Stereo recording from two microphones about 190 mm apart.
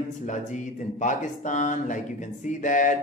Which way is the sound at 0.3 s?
40° left (ahead or behind).